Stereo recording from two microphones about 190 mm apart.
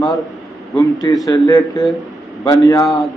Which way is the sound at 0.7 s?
20° left (ahead or behind).